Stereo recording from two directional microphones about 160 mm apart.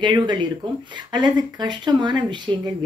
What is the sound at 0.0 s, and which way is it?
Speech, 30° right (ahead or behind).